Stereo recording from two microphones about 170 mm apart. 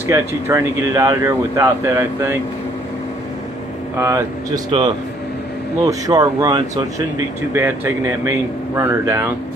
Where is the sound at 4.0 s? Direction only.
15° right (ahead or behind).